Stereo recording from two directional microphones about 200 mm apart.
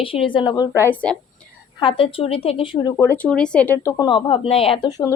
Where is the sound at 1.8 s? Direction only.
25° left (ahead or behind).